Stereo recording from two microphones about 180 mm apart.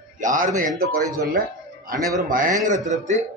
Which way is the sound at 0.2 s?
45° right (ahead or behind).